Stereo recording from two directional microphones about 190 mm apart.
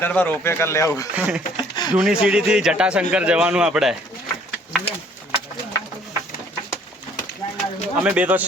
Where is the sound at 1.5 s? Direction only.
20° left (ahead or behind).